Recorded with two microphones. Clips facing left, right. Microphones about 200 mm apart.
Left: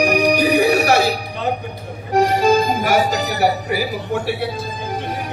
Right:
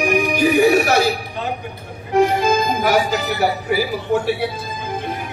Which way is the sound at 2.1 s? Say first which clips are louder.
Left 1 dB; 40° left (ahead or behind).